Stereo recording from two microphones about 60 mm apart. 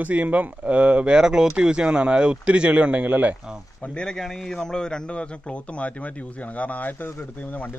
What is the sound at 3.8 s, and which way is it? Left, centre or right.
Speech, centre.